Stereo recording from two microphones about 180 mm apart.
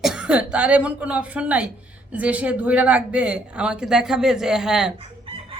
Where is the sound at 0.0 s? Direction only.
5° right (ahead or behind).